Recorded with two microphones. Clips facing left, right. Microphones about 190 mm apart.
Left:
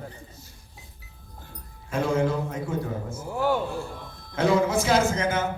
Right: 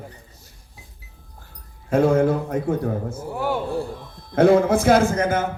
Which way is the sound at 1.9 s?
55° right (ahead or behind).